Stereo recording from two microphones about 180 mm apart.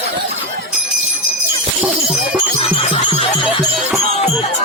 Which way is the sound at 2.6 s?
30° left (ahead or behind).